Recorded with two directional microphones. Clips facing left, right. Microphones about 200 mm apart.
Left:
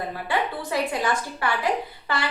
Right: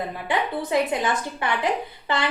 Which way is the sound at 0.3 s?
20° right (ahead or behind).